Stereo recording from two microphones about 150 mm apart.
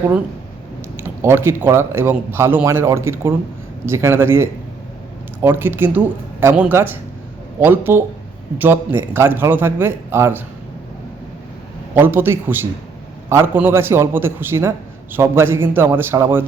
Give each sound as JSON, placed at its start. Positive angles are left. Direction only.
{"t": 0.9, "sound": "speech", "side_deg": -15}
{"t": 11.9, "sound": "speech", "side_deg": -15}